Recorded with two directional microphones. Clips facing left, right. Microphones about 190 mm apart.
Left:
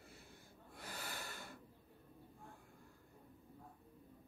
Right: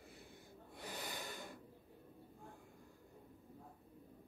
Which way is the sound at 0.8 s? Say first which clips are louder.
Right 2 dB; 15° right (ahead or behind).